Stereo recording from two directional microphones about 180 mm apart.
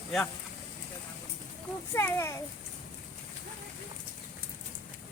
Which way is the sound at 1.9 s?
15° left (ahead or behind).